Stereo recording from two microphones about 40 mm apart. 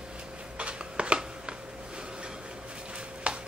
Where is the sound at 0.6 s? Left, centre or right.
Right.